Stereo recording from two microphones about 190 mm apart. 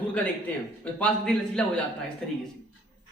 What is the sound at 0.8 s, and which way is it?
Speech, 5° left (ahead or behind).